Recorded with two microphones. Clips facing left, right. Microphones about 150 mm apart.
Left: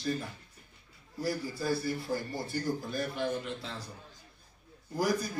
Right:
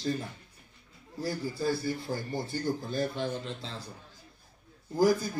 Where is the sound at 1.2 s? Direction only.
25° right (ahead or behind).